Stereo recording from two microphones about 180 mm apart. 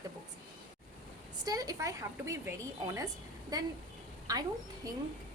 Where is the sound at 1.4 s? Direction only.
20° right (ahead or behind).